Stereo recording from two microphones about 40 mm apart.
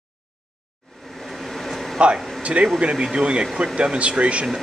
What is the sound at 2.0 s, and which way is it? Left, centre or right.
Speech, right.